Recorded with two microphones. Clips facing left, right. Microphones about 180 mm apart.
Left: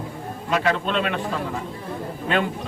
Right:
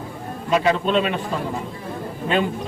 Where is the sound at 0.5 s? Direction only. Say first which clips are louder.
Right 4 dB; 20° right (ahead or behind).